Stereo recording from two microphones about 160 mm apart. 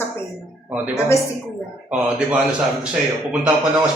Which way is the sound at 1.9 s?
5° right (ahead or behind).